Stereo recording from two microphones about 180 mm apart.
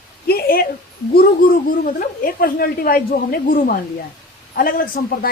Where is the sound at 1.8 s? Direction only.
50° left (ahead or behind).